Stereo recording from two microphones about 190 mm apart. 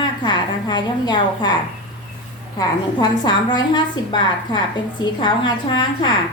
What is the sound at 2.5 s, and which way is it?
A woman's voice, 20° left (ahead or behind).